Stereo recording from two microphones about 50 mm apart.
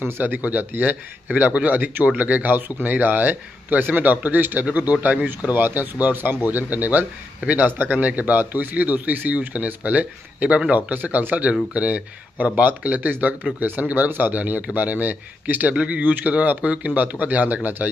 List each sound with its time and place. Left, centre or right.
0.0 s a man's voice: right
15.7 s a man's voice: right